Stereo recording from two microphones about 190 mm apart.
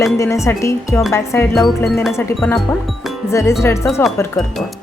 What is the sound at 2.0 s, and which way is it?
Wind chime, centre (ahead or behind).